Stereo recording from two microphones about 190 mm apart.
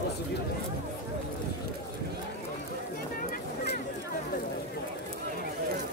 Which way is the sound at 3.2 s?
50° left (ahead or behind).